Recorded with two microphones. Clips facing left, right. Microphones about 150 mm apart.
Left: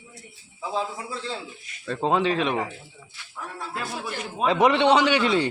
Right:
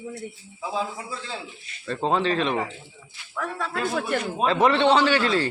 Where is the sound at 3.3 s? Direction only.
90° right; by 4.2 s 65° right (ahead or behind).